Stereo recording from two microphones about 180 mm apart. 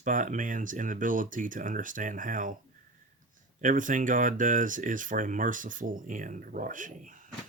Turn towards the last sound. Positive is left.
turn(degrees=-45)  # may be behind; listen again after turning